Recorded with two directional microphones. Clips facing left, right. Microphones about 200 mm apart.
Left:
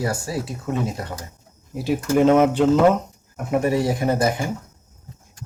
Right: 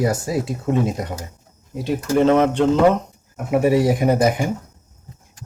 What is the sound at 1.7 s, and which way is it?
Speech, 5° left (ahead or behind).